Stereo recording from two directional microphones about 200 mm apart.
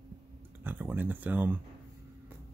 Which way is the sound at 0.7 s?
10° right (ahead or behind).